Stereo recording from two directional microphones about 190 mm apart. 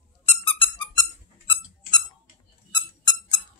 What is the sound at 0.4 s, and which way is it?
Music, 25° left (ahead or behind).